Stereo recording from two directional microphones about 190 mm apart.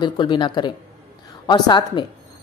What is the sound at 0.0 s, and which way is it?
A woman's voice, 25° left (ahead or behind).